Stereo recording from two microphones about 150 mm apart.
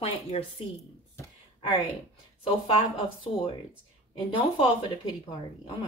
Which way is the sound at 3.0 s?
35° left (ahead or behind).